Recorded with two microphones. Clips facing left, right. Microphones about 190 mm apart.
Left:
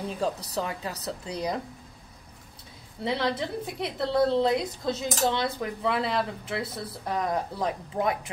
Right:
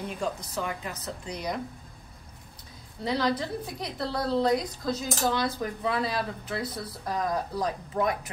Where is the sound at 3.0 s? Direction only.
25° left (ahead or behind).